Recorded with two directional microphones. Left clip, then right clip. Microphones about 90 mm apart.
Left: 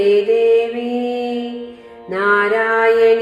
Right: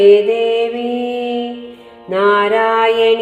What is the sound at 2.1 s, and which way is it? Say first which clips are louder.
Mantra: right 2 dB; 65° right (ahead or behind).